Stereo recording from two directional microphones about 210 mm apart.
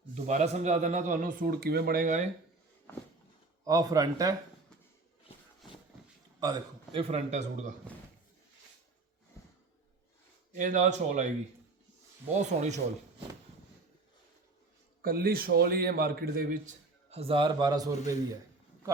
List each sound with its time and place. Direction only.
0.1 s a man's voice: 35° right (ahead or behind)
3.6 s speech: 15° right (ahead or behind)
6.4 s a man's voice: 20° right (ahead or behind)
7.1 s a man's voice: 35° right (ahead or behind)
10.5 s a man's voice: 35° right (ahead or behind)
12.5 s speech: 35° right (ahead or behind)
15.0 s a man's voice: 45° right (ahead or behind)
17.1 s a man's voice: 30° right (ahead or behind)